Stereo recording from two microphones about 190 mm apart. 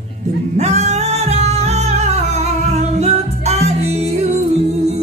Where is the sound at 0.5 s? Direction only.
35° right (ahead or behind).